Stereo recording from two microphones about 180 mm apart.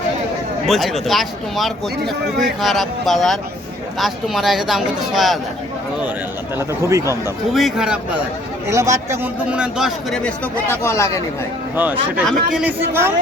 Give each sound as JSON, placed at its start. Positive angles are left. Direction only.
{"t": 0.7, "sound": "speech", "side_deg": 0}
{"t": 6.6, "sound": "speech", "side_deg": -15}
{"t": 7.5, "sound": "speech", "side_deg": 0}
{"t": 8.6, "sound": "speech", "side_deg": -15}
{"t": 11.8, "sound": "speech", "side_deg": -10}